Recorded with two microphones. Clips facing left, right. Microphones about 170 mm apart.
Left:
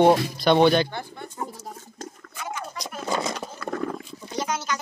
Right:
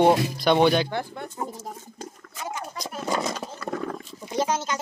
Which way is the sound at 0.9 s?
90° right.